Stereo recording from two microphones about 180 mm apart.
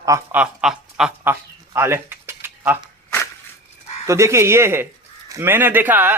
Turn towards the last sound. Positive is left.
turn(degrees=-10)  # may be behind; listen again after turning